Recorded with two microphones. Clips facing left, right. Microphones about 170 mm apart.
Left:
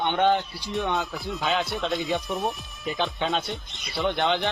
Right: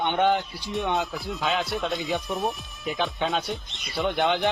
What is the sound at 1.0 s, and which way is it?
A man's voice, centre (ahead or behind).